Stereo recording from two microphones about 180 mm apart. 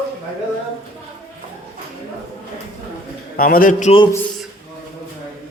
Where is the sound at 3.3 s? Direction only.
55° left (ahead or behind).